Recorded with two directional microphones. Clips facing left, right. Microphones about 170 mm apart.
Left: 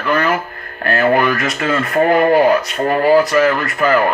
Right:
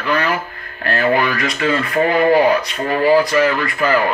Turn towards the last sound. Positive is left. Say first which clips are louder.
# left 2 dB
turn(degrees=0)  # may be behind; listen again after turning